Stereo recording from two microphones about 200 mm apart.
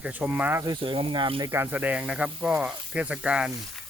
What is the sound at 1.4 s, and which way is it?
Speech, 10° right (ahead or behind).